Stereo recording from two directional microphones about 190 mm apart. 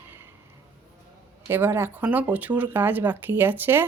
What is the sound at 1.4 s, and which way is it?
Speech, 10° right (ahead or behind).